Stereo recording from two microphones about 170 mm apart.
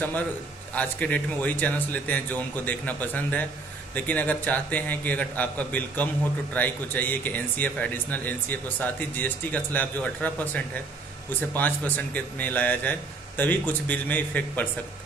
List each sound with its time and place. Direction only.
0.7 s speech: 10° left (ahead or behind)